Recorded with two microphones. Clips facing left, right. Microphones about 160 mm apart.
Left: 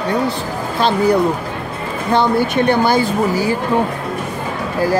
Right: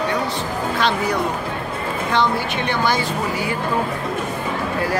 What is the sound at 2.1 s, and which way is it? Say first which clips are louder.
Speech: left 6 dB; 45° left (ahead or behind).